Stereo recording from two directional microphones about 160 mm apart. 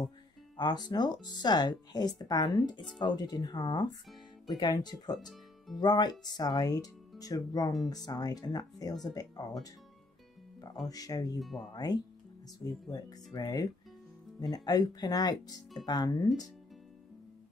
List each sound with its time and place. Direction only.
0.6 s speech: 25° left (ahead or behind)
5.2 s music: centre (ahead or behind)
5.8 s speech: 25° left (ahead or behind)
10.9 s speech: 25° left (ahead or behind)